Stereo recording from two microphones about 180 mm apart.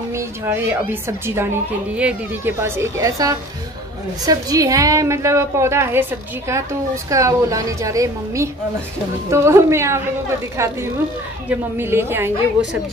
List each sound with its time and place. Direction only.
0.1 s a woman's voice: 15° right (ahead or behind)